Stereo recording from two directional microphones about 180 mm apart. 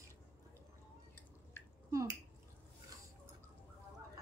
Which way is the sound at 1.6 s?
10° left (ahead or behind).